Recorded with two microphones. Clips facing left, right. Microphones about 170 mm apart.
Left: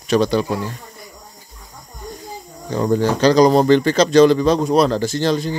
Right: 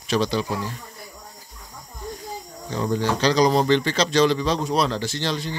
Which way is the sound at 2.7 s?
45° left (ahead or behind).